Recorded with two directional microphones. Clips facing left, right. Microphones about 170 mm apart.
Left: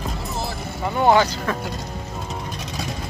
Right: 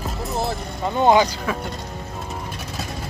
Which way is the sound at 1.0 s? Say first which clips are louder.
Right 1 dB; 20° right (ahead or behind).